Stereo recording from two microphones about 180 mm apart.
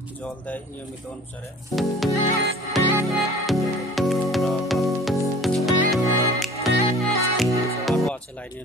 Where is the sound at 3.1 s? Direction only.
Centre (ahead or behind).